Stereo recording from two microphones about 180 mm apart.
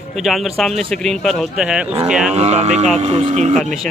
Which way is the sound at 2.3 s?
40° right (ahead or behind).